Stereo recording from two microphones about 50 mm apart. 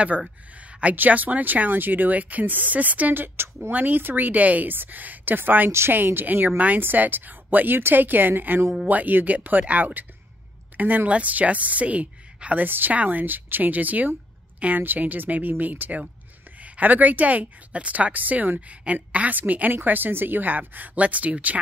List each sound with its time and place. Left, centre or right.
0.6 s a sound: right
0.9 s a woman's voice: right
5.7 s a woman's voice: right
5.9 s a woman's voice: right
12.6 s a woman's voice: right